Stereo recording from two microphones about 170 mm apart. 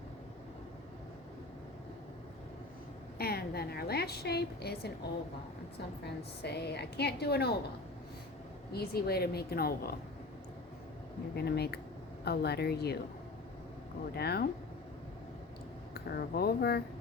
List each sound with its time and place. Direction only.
3.2 s a woman's voice: 65° left (ahead or behind)
6.4 s a woman's voice: 75° left (ahead or behind)
8.7 s a woman's voice: 65° left (ahead or behind)
11.3 s a woman's voice: 70° left (ahead or behind)
14.2 s a woman's voice: 70° left (ahead or behind)
16.0 s a woman's voice: 70° left (ahead or behind)